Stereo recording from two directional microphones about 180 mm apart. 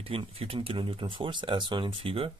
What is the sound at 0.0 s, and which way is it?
Speech, 30° right (ahead or behind).